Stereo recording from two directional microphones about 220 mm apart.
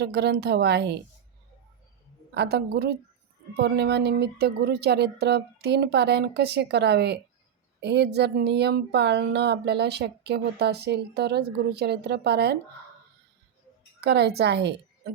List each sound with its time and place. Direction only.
0.0 s speech: 50° right (ahead or behind)
2.3 s speech: 50° right (ahead or behind)
14.0 s speech: 50° right (ahead or behind)